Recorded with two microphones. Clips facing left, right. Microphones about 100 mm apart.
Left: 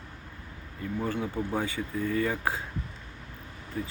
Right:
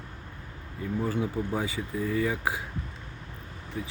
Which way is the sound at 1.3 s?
5° right (ahead or behind).